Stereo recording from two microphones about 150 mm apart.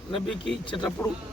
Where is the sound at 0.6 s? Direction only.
30° left (ahead or behind).